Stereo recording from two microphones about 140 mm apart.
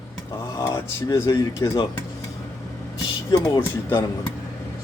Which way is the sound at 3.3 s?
25° left (ahead or behind).